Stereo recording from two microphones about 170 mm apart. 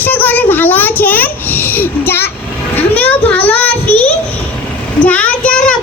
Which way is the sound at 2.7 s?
10° left (ahead or behind).